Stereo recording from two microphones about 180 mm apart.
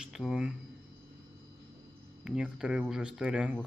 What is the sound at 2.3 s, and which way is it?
Speech, 5° right (ahead or behind).